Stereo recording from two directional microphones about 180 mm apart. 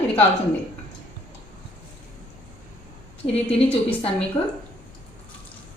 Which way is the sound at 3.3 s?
35° left (ahead or behind).